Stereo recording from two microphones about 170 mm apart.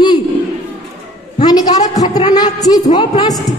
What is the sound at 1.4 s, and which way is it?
A man's voice, 20° left (ahead or behind).